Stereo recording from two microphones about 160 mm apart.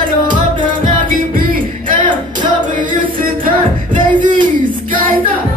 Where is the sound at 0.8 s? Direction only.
60° right (ahead or behind).